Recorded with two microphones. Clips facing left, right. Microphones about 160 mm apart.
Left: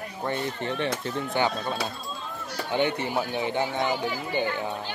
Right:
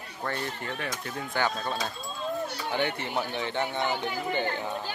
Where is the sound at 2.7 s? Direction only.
15° left (ahead or behind).